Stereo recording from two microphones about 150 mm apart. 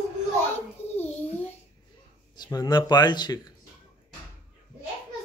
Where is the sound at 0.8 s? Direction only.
45° left (ahead or behind).